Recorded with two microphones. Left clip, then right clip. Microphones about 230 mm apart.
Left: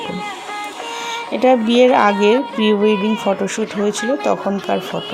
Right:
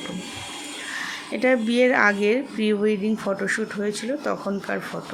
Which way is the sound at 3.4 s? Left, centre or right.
Centre.